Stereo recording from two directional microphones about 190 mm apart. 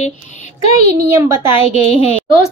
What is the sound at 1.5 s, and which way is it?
Speech, 30° left (ahead or behind).